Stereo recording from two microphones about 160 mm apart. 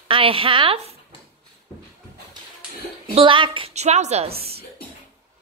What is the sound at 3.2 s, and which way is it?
Speech, 30° right (ahead or behind).